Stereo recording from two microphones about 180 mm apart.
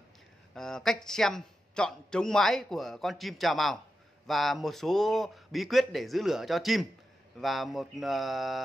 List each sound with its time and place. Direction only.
0.6 s speech: 5° left (ahead or behind)